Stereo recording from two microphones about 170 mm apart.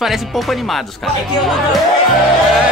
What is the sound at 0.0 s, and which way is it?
Speech, centre (ahead or behind).